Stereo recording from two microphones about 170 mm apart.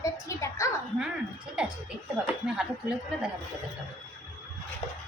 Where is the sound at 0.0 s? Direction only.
15° left (ahead or behind).